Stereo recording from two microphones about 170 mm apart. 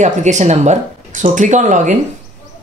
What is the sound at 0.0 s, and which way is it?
A woman's voice, 45° right (ahead or behind).